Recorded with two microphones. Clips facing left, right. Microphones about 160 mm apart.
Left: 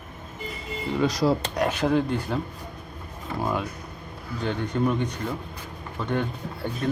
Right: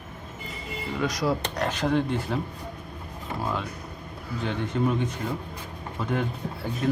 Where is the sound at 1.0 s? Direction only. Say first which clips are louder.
Left 4 dB; 30° left (ahead or behind).